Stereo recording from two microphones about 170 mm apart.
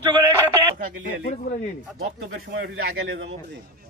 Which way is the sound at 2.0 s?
65° right (ahead or behind).